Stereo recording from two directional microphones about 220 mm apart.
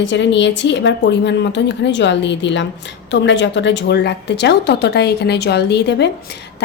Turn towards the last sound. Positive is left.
turn(degrees=50)  # may be behind; listen again after turning